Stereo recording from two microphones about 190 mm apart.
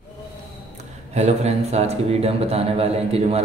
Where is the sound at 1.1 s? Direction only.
35° right (ahead or behind).